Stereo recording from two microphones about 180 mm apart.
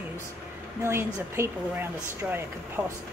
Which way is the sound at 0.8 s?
15° right (ahead or behind).